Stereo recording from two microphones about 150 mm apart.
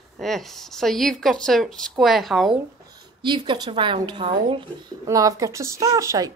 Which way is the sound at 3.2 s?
30° right (ahead or behind).